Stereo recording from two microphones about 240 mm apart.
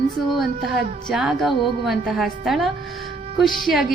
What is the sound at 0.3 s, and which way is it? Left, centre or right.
A woman's voice, centre.